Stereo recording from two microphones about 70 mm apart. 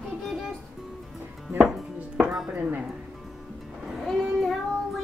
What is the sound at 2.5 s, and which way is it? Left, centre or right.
Music, right.